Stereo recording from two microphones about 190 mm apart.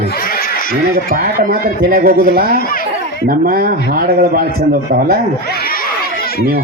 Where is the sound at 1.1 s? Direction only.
50° right (ahead or behind).